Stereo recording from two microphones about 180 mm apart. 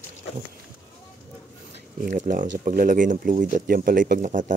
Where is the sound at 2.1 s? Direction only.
45° right (ahead or behind).